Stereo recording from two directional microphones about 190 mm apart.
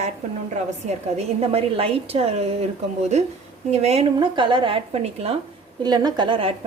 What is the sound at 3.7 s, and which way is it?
A woman's voice, 35° right (ahead or behind).